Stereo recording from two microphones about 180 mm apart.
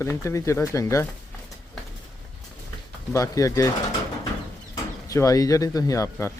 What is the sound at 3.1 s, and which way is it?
Speech, 20° left (ahead or behind).